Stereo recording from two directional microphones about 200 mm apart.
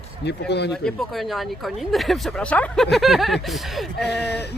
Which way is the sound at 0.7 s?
Centre (ahead or behind).